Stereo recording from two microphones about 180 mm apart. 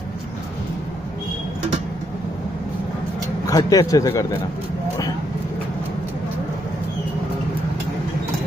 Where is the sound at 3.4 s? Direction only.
20° left (ahead or behind).